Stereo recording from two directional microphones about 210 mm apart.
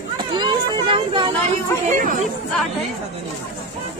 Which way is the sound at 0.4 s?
25° right (ahead or behind).